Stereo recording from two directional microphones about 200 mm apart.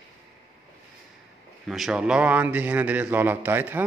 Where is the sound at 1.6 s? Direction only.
Centre (ahead or behind).